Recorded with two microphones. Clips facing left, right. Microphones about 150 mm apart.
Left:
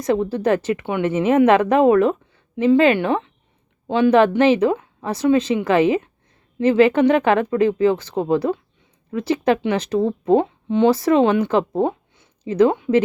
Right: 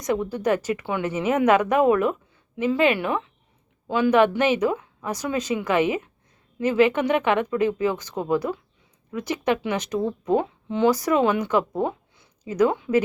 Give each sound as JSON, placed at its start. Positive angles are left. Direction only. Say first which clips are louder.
{"t": 0.0, "sound": "speech", "louder": "left 5 dB", "side_deg": 30}